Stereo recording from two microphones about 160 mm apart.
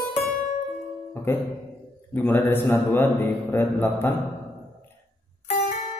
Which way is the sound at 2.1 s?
10° left (ahead or behind).